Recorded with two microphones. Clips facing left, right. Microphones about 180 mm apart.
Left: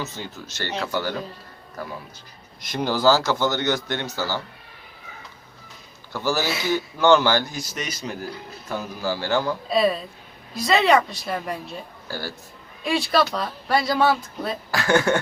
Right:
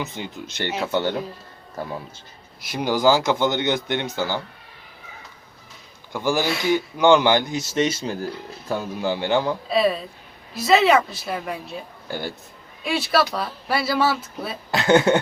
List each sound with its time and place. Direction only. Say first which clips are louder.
0.0 s a man's voice: right 2 dB; 15° right (ahead or behind)
2.6 s a man's voice: right 1 dB; 10° right (ahead or behind)
6.1 s a man's voice: right 2 dB; 15° right (ahead or behind)
6.4 s speech: right 2 dB; centre (ahead or behind)
6.7 s speech: right 1 dB; 15° right (ahead or behind)
9.6 s speech: even; centre (ahead or behind)
12.0 s a man's voice: right 3 dB; 20° right (ahead or behind)
12.8 s speech: even; centre (ahead or behind)
14.7 s speech: right 4 dB; 20° right (ahead or behind)